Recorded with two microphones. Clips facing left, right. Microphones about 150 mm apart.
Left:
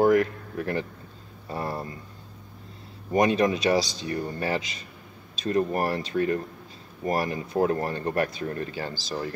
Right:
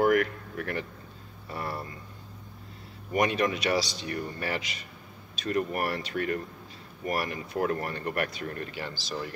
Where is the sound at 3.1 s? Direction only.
30° left (ahead or behind).